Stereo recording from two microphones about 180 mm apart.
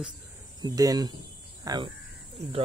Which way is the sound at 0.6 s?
20° right (ahead or behind).